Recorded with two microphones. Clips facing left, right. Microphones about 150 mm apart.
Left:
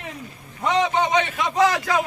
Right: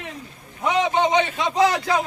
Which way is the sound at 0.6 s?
15° right (ahead or behind).